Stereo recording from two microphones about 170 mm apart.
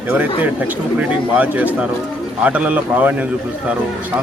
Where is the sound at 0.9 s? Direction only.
10° right (ahead or behind).